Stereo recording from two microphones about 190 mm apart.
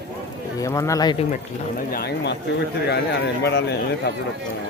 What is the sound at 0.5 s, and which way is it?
Speech, 15° left (ahead or behind).